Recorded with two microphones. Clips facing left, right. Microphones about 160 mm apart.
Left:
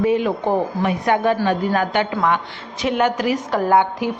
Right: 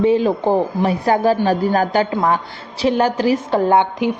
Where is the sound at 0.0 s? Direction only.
30° right (ahead or behind).